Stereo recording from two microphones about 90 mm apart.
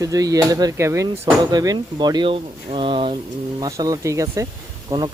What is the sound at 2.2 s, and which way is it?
Speech, 80° right.